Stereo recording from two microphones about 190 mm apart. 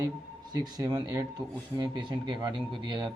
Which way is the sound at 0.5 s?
20° right (ahead or behind).